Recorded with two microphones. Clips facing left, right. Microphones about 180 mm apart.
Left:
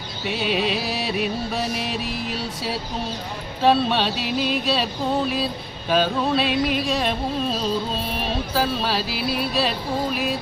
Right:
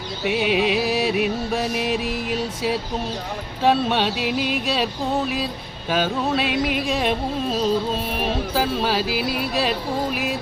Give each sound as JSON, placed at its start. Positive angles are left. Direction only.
{"t": 0.3, "sound": "music", "side_deg": -10}
{"t": 3.6, "sound": "music", "side_deg": -15}
{"t": 5.9, "sound": "music", "side_deg": -10}